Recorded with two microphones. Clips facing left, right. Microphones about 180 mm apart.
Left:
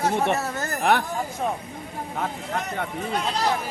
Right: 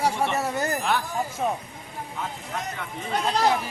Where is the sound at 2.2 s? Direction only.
55° left (ahead or behind).